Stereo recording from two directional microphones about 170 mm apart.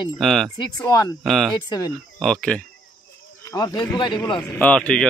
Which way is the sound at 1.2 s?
Centre (ahead or behind).